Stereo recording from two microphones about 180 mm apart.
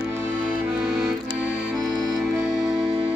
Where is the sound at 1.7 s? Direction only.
Centre (ahead or behind).